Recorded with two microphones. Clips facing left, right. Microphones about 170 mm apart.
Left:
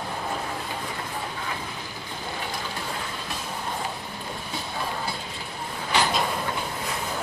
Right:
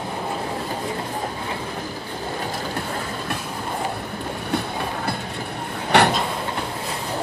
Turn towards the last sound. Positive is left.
turn(degrees=-65)  # may be behind; listen again after turning